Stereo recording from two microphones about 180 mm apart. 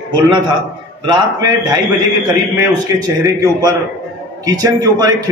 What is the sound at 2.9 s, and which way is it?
A man's voice, 20° right (ahead or behind).